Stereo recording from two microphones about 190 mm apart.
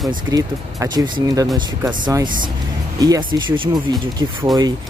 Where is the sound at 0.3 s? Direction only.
20° right (ahead or behind).